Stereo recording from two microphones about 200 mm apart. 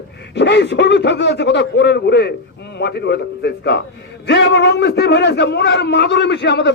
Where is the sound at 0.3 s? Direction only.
60° left (ahead or behind).